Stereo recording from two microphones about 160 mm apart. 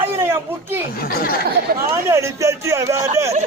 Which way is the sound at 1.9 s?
15° right (ahead or behind).